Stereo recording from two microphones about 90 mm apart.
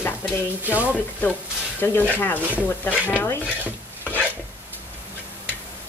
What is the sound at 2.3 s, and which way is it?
Speech, 15° right (ahead or behind).